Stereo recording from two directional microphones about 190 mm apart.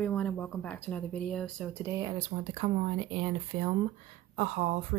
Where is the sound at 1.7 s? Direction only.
15° right (ahead or behind).